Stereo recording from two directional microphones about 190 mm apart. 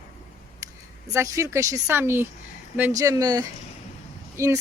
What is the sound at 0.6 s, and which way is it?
Speech, 15° right (ahead or behind).